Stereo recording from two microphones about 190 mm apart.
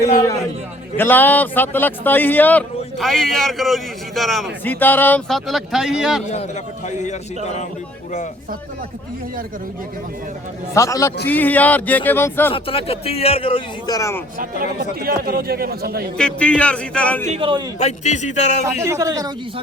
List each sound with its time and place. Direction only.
0.9 s a man's voice: 10° left (ahead or behind)
6.8 s speech: 40° left (ahead or behind)
10.8 s a man's voice: 15° left (ahead or behind)
12.5 s a man's voice: 30° left (ahead or behind)
14.8 s a man's voice: 50° right (ahead or behind)
16.1 s music: 5° left (ahead or behind)
17.2 s a man's voice: 30° right (ahead or behind)
17.7 s speech: 35° left (ahead or behind)
18.8 s a man's voice: 15° right (ahead or behind)